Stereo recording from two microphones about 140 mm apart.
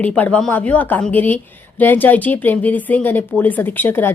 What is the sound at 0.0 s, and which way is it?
A woman's voice, 10° left (ahead or behind).